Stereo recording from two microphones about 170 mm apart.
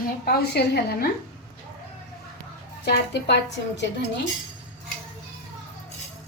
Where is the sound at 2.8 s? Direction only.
80° left.